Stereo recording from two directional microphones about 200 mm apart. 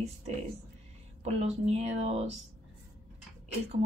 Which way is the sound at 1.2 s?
30° right (ahead or behind).